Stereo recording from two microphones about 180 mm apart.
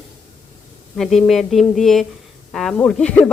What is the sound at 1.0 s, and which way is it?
A woman's voice, centre (ahead or behind).